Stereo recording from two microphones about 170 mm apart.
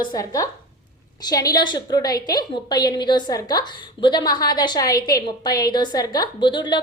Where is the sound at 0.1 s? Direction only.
20° left (ahead or behind).